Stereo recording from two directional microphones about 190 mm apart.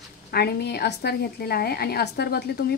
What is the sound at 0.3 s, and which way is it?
A woman's voice, 55° left (ahead or behind).